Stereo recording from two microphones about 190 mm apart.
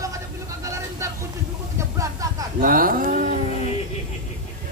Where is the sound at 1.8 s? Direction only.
15° right (ahead or behind).